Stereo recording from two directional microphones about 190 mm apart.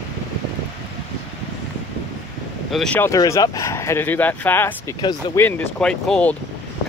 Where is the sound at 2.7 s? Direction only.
5° left (ahead or behind).